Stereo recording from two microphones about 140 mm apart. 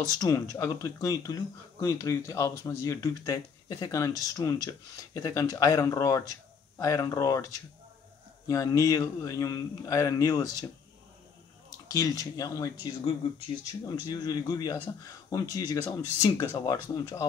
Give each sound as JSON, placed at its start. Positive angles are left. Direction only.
{"t": 0.2, "sound": "speech", "side_deg": 25}
{"t": 11.9, "sound": "speech", "side_deg": 25}
{"t": 14.0, "sound": "speech", "side_deg": 30}